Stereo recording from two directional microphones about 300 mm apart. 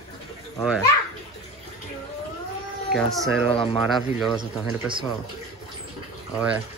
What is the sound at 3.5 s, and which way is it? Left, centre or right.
Speech, centre.